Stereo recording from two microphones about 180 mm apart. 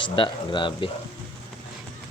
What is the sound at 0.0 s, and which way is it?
Speech, 25° left (ahead or behind).